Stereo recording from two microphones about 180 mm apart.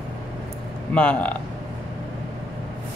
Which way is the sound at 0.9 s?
5° left (ahead or behind).